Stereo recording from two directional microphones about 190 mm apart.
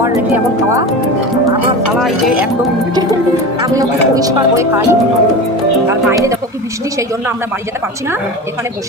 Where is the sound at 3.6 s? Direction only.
20° right (ahead or behind).